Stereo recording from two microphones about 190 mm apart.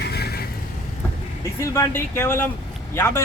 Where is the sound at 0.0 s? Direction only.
60° left (ahead or behind).